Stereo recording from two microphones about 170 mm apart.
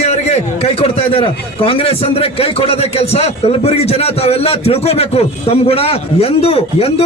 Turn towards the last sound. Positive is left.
turn(degrees=35)  # may be behind; listen again after turning